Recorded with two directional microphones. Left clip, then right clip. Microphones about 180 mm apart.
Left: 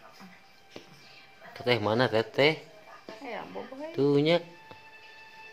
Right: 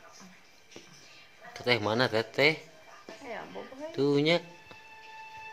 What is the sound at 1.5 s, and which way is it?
Speech, 5° left (ahead or behind).